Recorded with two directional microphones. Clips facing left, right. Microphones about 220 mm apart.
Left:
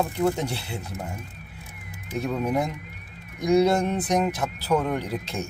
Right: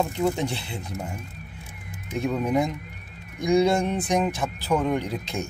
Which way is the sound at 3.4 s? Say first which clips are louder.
Left 1 dB; 10° right (ahead or behind).